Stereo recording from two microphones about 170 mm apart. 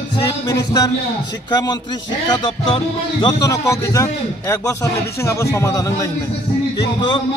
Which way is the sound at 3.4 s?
20° left (ahead or behind).